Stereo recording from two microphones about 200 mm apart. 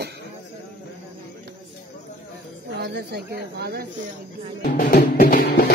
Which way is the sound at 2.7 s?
55° right (ahead or behind).